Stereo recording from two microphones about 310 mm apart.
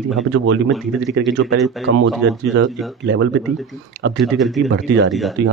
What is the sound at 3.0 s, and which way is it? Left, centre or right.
Speech, right.